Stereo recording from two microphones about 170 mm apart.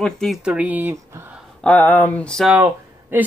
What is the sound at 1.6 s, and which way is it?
Speech, 10° left (ahead or behind).